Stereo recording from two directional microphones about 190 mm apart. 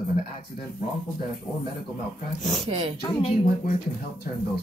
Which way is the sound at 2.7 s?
30° right (ahead or behind).